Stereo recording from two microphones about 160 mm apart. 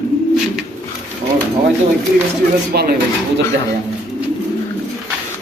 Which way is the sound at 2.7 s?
75° right (ahead or behind).